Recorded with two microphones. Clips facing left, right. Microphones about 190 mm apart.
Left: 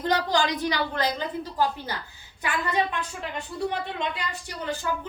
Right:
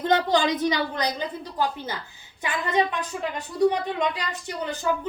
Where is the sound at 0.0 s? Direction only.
25° right (ahead or behind).